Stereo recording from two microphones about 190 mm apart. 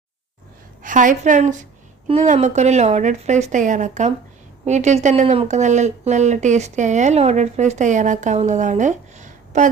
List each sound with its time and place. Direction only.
0.8 s a woman's voice: 45° right (ahead or behind)